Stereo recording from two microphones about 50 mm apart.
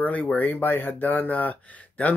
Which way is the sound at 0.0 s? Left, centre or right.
Left.